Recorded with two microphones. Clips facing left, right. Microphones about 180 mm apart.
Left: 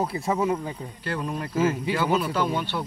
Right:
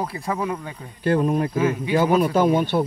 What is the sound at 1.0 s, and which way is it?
Speech, 50° right (ahead or behind).